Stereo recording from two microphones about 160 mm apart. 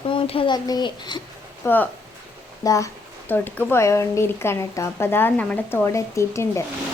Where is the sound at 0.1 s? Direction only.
35° left (ahead or behind).